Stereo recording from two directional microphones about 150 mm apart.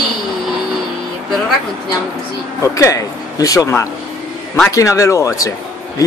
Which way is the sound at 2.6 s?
20° left (ahead or behind).